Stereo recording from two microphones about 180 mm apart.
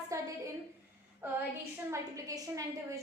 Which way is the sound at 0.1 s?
15° right (ahead or behind).